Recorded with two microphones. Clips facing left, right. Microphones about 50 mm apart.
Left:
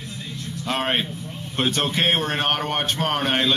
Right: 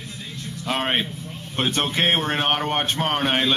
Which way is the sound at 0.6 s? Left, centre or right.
Centre.